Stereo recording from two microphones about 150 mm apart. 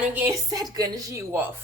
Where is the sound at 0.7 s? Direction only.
25° right (ahead or behind).